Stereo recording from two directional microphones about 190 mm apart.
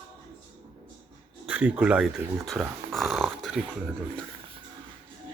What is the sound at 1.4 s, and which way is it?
Speech, 10° right (ahead or behind).